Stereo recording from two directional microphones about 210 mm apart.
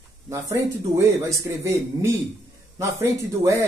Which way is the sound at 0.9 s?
15° right (ahead or behind).